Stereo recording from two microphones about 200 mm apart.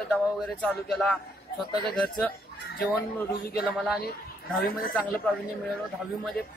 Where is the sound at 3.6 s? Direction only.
5° right (ahead or behind).